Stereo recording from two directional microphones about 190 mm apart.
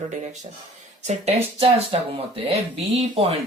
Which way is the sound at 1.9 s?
30° right (ahead or behind).